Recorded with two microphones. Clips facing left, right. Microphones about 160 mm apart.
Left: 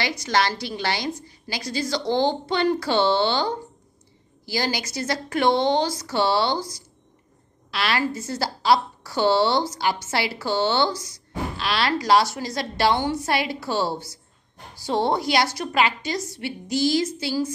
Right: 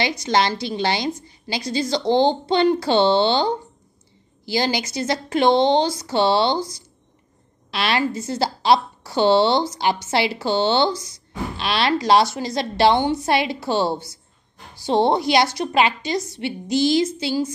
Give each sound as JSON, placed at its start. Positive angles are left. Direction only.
{"t": 0.0, "sound": "speech", "side_deg": -20}